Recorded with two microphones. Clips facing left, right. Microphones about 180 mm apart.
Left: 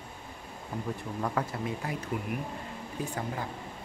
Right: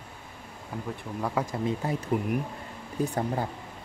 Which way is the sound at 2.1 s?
45° right (ahead or behind).